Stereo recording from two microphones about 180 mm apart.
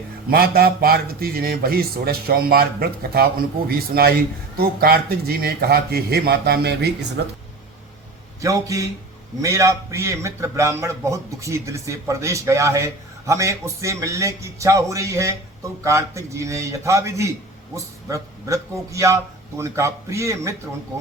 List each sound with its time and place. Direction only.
0.3 s a man's voice: 60° right (ahead or behind)
8.4 s a man's voice: 20° right (ahead or behind)